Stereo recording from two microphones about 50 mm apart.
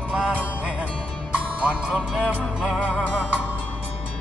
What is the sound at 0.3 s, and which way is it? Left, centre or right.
Music, right.